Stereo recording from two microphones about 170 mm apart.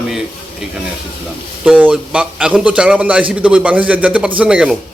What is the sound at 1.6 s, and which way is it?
A man's voice, 5° right (ahead or behind).